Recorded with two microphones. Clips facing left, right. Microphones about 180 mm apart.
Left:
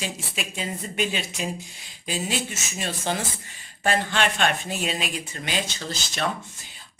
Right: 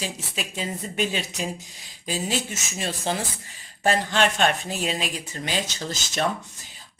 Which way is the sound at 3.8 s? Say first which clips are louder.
Right 2 dB; 40° right (ahead or behind).